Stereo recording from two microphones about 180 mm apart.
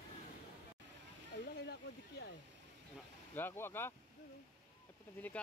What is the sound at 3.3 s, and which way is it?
Speech, 10° left (ahead or behind).